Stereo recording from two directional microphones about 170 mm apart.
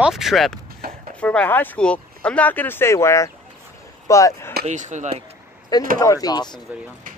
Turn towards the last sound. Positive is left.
turn(degrees=25)  # may be behind; listen again after turning